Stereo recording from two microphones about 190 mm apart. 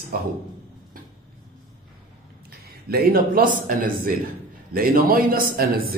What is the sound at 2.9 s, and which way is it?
A man's voice, 50° right (ahead or behind).